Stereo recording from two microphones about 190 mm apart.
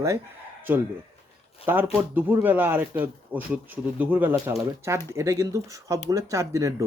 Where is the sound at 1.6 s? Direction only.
10° right (ahead or behind).